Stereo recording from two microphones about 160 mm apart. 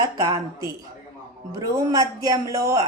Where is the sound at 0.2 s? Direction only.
25° right (ahead or behind).